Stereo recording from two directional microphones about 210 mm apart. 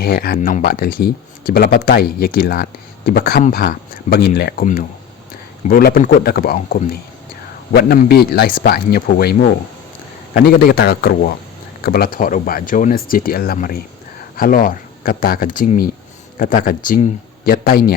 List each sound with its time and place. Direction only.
0.0 s speech: 45° left (ahead or behind)